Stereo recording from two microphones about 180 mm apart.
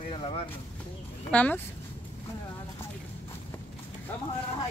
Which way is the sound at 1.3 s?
10° left (ahead or behind).